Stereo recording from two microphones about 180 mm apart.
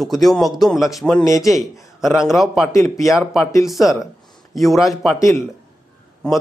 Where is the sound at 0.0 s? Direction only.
Centre (ahead or behind).